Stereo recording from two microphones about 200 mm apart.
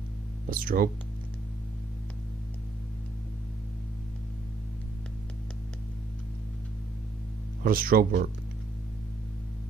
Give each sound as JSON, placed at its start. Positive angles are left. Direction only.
{"t": 0.5, "sound": "speech", "side_deg": -45}
{"t": 7.6, "sound": "speech", "side_deg": -45}